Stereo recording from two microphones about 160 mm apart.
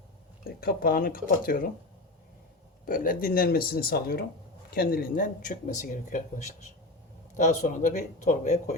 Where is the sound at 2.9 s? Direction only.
60° left (ahead or behind).